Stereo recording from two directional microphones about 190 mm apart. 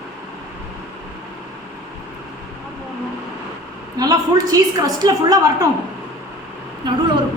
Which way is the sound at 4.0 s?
20° right (ahead or behind).